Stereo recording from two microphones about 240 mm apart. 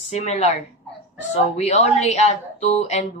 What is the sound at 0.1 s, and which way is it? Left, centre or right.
Speech, left.